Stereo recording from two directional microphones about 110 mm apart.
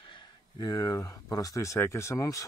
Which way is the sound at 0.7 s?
30° left (ahead or behind).